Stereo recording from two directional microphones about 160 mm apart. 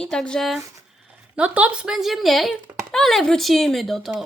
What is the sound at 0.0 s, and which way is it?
A woman's voice, 5° left (ahead or behind).